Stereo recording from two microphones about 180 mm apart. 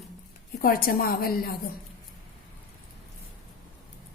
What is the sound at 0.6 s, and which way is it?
Speech, 55° left (ahead or behind).